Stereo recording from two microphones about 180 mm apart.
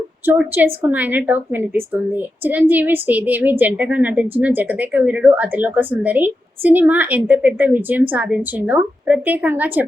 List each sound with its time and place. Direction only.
0.3 s a woman's voice: 10° right (ahead or behind)